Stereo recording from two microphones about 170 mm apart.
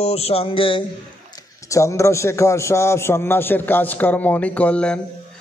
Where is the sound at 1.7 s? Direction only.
15° left (ahead or behind).